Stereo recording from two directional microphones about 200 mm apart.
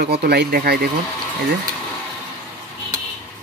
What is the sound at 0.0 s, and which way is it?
Speech, 55° right (ahead or behind).